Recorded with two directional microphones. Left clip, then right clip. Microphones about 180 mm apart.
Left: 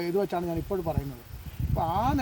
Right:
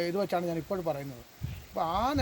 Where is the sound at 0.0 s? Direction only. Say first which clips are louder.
Left 2 dB; 15° right (ahead or behind).